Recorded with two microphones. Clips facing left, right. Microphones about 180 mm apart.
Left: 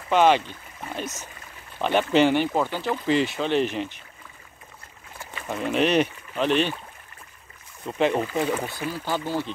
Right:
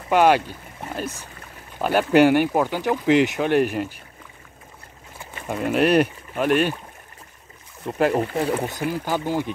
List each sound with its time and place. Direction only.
0.1 s speech: 10° right (ahead or behind)
5.5 s speech: 10° right (ahead or behind)
7.8 s speech: 5° right (ahead or behind)
8.5 s speech: 35° right (ahead or behind)
8.7 s speech: 15° right (ahead or behind)